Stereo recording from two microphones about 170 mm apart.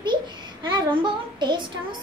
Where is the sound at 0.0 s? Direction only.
25° right (ahead or behind).